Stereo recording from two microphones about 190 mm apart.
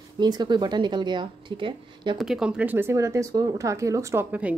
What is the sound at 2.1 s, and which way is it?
A woman's voice, 5° right (ahead or behind).